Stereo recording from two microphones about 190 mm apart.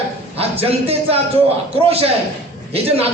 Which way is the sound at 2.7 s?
30° right (ahead or behind).